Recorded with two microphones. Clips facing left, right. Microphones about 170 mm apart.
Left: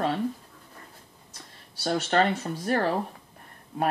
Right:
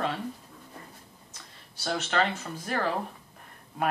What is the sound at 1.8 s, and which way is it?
Speech, 35° left (ahead or behind).